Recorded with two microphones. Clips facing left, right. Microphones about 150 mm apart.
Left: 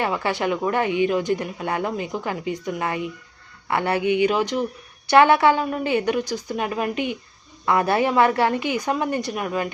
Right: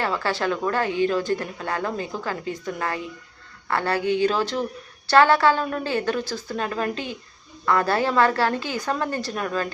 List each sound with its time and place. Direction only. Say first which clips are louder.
0.0 s a woman's voice: left 1 dB; 20° left (ahead or behind)